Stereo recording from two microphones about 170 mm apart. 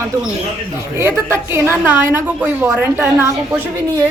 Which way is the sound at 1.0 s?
15° right (ahead or behind).